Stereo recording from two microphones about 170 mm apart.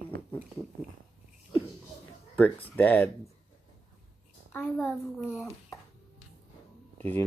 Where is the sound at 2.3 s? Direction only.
10° left (ahead or behind).